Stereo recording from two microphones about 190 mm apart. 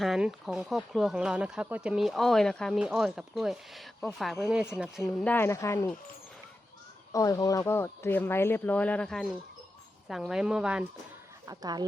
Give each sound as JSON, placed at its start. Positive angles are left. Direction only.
{"t": 0.0, "sound": "speech", "side_deg": 0}
{"t": 7.1, "sound": "speech", "side_deg": 15}
{"t": 11.4, "sound": "speech", "side_deg": -20}